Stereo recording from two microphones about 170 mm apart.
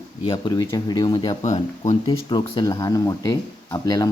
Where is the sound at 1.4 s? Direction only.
40° left (ahead or behind); by 4.1 s 20° left (ahead or behind).